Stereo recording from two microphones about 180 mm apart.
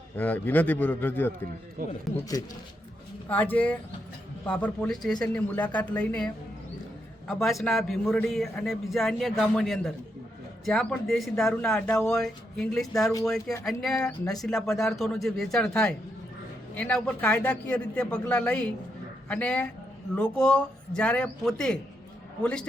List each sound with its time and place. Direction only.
0.2 s speech: 10° left (ahead or behind)
3.2 s a man's voice: 10° left (ahead or behind)